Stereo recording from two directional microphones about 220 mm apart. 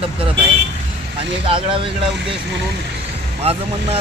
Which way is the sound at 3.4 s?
25° right (ahead or behind).